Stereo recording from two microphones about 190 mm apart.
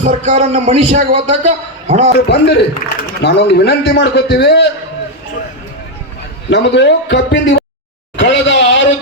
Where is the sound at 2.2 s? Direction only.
60° left (ahead or behind).